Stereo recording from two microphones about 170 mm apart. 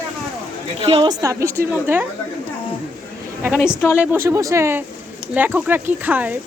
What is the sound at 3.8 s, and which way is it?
Speech, 15° left (ahead or behind).